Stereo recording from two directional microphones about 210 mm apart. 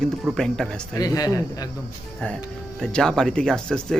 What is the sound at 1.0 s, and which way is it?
Speech, 15° left (ahead or behind).